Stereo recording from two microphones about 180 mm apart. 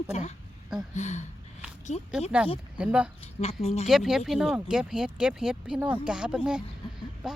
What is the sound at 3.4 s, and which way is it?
Speech, 35° left (ahead or behind).